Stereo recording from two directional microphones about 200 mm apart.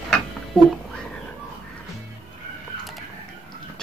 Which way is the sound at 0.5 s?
5° left (ahead or behind).